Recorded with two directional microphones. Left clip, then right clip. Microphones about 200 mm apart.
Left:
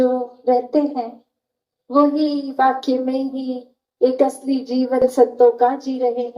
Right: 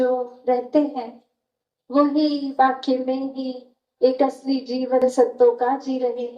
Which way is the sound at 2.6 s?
60° left (ahead or behind).